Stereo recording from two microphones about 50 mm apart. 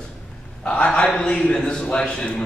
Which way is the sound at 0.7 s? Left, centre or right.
Left.